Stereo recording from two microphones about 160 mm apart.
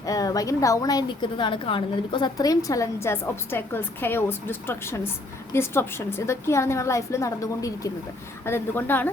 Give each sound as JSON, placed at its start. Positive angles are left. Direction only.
{"t": 0.0, "sound": "a woman's voice", "side_deg": 20}